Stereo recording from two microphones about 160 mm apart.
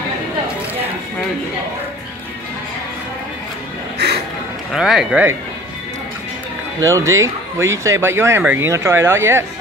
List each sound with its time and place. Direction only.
4.7 s a man's voice: 5° right (ahead or behind)
6.8 s speech: 20° right (ahead or behind)